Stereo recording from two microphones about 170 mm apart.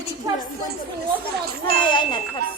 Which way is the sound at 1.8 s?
25° left (ahead or behind).